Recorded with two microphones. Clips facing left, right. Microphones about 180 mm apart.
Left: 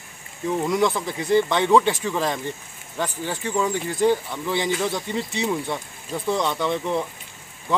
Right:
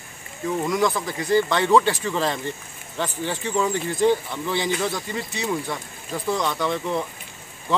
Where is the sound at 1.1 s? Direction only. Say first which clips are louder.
Left 1 dB; 20° left (ahead or behind).